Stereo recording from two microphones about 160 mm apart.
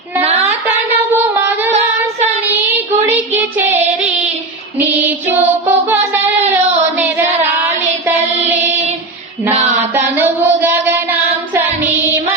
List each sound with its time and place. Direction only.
0.2 s a sound: 40° right (ahead or behind)
3.3 s female singing: 10° right (ahead or behind)
4.9 s music: 10° right (ahead or behind)
7.6 s music: 15° right (ahead or behind)
9.9 s music: 10° right (ahead or behind)